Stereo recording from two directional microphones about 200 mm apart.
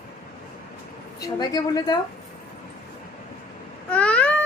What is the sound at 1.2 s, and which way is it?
Speech, 20° left (ahead or behind).